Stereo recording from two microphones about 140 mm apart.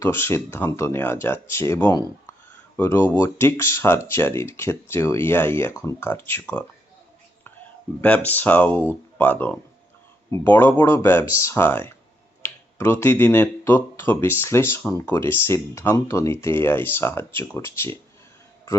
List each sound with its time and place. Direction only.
0.0 s speech: 20° left (ahead or behind)
8.0 s speech: 10° left (ahead or behind)